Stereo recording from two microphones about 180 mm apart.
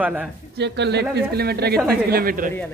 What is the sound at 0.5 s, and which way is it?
Speech, 70° right (ahead or behind).